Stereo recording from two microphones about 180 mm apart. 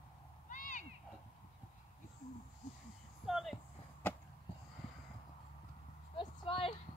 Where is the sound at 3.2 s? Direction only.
Centre (ahead or behind).